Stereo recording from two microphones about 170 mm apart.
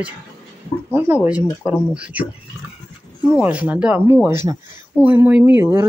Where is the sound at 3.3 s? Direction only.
10° right (ahead or behind).